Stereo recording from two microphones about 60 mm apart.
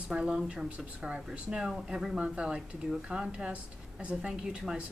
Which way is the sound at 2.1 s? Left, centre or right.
Centre.